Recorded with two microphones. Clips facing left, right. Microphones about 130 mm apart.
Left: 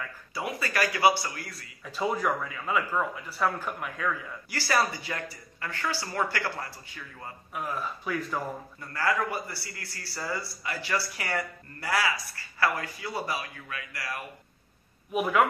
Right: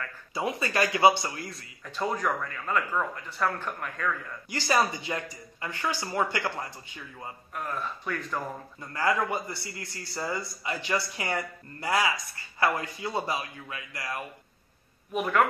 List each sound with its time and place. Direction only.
0.3 s a man's voice: 25° right (ahead or behind)
1.9 s speech: 5° left (ahead or behind)
4.5 s a man's voice: 20° right (ahead or behind)
7.5 s speech: 5° left (ahead or behind)
8.9 s a man's voice: 20° right (ahead or behind)
15.1 s speech: 5° left (ahead or behind)